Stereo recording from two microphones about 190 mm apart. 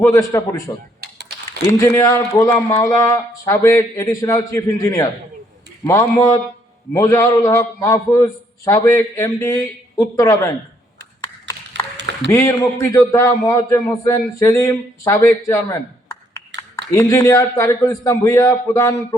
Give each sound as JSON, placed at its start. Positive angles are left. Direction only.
{"t": 0.0, "sound": "a man's voice", "side_deg": 15}
{"t": 1.0, "sound": "typing", "side_deg": -60}
{"t": 1.6, "sound": "a man's voice", "side_deg": 15}
{"t": 12.3, "sound": "a man's voice", "side_deg": 15}